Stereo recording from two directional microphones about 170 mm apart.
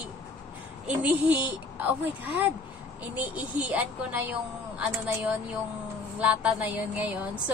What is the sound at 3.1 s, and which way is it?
Speech, 10° right (ahead or behind).